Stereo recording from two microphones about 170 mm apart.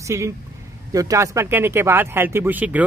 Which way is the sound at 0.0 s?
15° right (ahead or behind).